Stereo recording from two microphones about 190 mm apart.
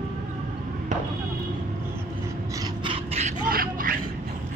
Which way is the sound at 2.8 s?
30° right (ahead or behind).